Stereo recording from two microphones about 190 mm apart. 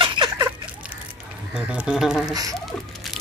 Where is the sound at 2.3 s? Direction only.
20° right (ahead or behind).